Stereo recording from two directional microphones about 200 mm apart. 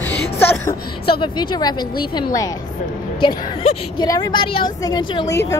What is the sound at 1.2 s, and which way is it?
A woman's voice, 25° left (ahead or behind).